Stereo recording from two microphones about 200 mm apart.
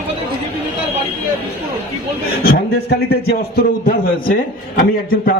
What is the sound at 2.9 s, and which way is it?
A man's voice, 55° left (ahead or behind).